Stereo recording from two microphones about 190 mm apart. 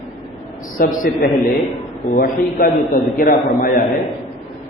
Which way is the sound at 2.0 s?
45° left (ahead or behind).